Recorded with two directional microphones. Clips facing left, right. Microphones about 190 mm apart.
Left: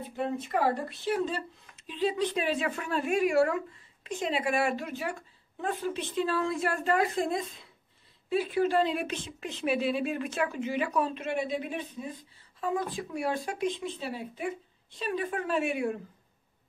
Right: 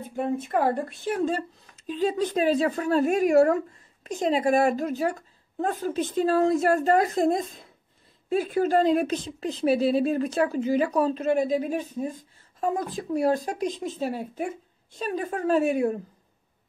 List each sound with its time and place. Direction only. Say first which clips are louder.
0.1 s a woman's voice: right 5 dB; 50° right (ahead or behind)